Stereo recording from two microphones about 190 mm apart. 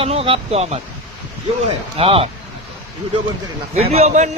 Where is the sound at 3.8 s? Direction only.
30° right (ahead or behind).